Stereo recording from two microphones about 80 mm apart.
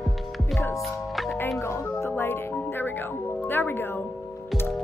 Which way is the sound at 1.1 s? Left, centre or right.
Centre.